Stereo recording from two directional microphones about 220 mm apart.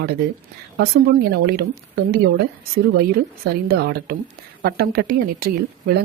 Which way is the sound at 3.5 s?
45° right (ahead or behind).